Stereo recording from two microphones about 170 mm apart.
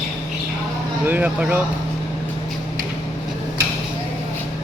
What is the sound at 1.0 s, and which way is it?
Speech, 10° right (ahead or behind).